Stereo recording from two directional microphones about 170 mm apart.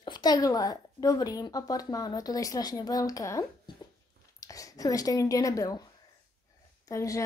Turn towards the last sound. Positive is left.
turn(degrees=20)  # may be behind; listen again after turning